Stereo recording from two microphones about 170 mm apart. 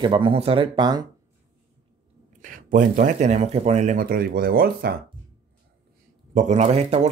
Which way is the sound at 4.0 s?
60° right (ahead or behind).